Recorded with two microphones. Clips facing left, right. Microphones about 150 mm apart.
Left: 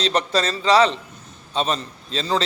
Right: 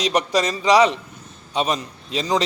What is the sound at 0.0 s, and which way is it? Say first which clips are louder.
A man's voice: right 1 dB; 15° right (ahead or behind).